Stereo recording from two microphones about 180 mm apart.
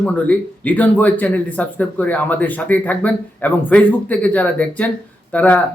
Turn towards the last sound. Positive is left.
turn(degrees=10)  # may be behind; listen again after turning